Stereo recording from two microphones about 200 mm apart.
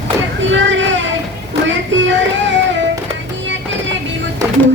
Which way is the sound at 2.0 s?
65° right (ahead or behind).